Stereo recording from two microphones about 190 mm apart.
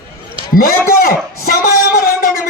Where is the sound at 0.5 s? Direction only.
50° left (ahead or behind).